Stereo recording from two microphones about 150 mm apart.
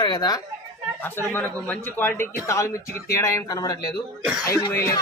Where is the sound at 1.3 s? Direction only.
15° left (ahead or behind).